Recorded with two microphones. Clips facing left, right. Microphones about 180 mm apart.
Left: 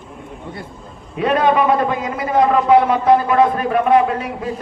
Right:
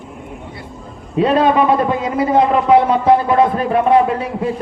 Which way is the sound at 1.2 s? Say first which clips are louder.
Right 2 dB; 30° right (ahead or behind).